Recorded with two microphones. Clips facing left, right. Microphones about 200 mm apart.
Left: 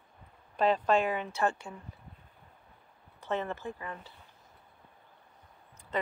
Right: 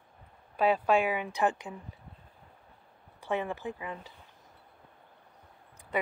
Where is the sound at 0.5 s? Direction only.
10° right (ahead or behind).